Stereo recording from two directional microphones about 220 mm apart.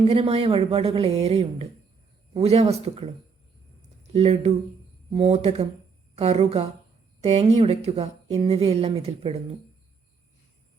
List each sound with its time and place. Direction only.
0.0 s a woman's voice: 25° right (ahead or behind)
4.1 s a woman's voice: 30° right (ahead or behind)